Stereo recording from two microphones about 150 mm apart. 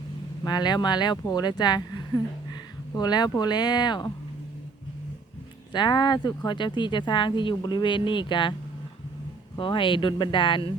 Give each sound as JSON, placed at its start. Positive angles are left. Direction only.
{"t": 0.4, "sound": "speech", "side_deg": 30}
{"t": 5.7, "sound": "speech", "side_deg": 30}
{"t": 9.6, "sound": "speech", "side_deg": 35}